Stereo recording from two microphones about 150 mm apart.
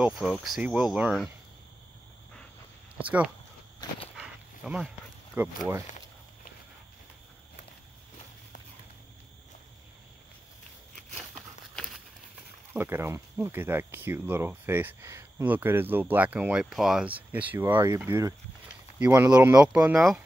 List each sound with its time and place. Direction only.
0.2 s speech: centre (ahead or behind)
3.0 s speech: 10° right (ahead or behind)
4.2 s dog: 5° right (ahead or behind)
5.4 s speech: 10° right (ahead or behind)
12.7 s speech: 15° right (ahead or behind)